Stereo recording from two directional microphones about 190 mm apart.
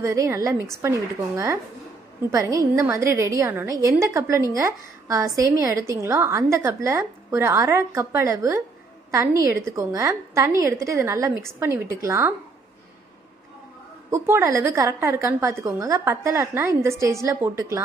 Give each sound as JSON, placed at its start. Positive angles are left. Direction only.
{"t": 0.0, "sound": "a woman's voice", "side_deg": -15}
{"t": 14.1, "sound": "a woman's voice", "side_deg": -15}